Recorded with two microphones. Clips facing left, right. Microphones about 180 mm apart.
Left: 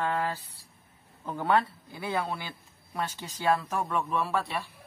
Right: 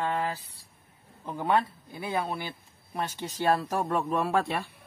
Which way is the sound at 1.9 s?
20° right (ahead or behind).